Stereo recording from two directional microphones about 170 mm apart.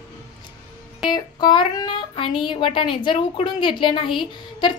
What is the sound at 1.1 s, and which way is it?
A woman's voice, 25° left (ahead or behind).